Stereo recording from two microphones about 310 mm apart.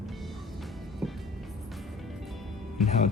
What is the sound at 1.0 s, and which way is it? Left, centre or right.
Music, centre.